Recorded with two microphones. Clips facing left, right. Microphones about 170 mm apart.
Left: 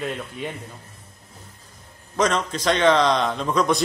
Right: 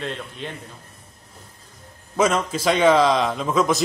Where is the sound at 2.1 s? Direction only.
5° right (ahead or behind).